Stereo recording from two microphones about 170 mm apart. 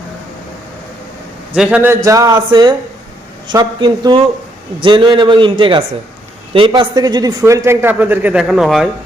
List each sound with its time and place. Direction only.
1.5 s a man's voice: 5° right (ahead or behind)